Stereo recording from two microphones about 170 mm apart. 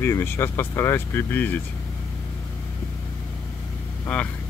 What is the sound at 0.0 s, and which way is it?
Speech, 15° left (ahead or behind).